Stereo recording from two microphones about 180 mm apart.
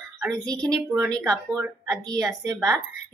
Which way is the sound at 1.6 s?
15° right (ahead or behind).